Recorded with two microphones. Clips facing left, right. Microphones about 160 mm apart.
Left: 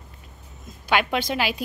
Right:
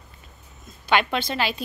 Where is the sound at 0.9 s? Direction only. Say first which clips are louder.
Even; 10° left (ahead or behind).